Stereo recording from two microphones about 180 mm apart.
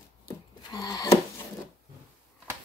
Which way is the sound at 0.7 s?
20° left (ahead or behind).